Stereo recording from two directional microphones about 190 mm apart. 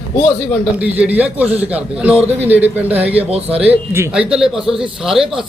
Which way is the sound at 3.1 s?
30° right (ahead or behind).